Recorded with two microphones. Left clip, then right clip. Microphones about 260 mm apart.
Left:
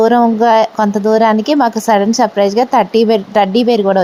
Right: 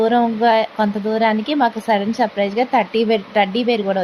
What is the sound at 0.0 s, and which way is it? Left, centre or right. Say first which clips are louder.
A woman's voice: left 5 dB; left.